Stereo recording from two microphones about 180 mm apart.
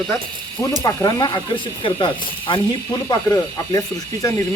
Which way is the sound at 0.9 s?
20° left (ahead or behind).